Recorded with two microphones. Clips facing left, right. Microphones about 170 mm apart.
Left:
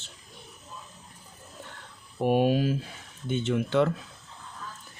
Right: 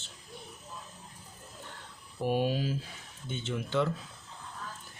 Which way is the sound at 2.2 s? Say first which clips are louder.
Left 6 dB; 55° left (ahead or behind).